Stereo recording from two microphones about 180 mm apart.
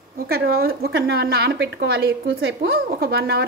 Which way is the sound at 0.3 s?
60° right (ahead or behind).